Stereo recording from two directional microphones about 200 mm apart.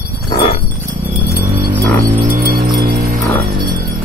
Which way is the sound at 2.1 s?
45° right (ahead or behind).